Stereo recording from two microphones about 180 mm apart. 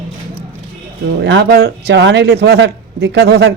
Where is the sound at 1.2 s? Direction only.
70° right (ahead or behind).